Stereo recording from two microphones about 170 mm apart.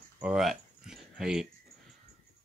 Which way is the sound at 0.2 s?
5° right (ahead or behind).